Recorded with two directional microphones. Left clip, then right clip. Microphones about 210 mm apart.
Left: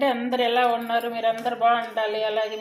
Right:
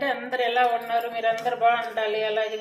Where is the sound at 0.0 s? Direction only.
30° left (ahead or behind).